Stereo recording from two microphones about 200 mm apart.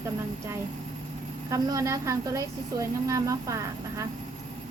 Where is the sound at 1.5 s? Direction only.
15° right (ahead or behind).